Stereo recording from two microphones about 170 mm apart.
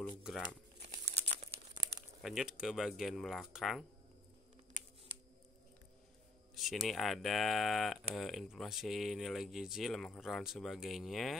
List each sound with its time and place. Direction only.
0.2 s speech: centre (ahead or behind)
0.7 s crumpling: 40° right (ahead or behind)
2.2 s speech: 5° right (ahead or behind)
6.5 s speech: centre (ahead or behind)